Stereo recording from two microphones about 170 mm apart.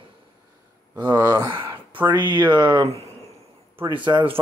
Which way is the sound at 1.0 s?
20° right (ahead or behind).